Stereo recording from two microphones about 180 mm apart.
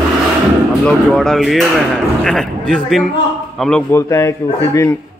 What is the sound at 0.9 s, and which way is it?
A man's voice, 5° left (ahead or behind).